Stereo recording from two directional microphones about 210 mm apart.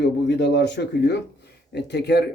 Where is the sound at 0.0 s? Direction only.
55° left (ahead or behind).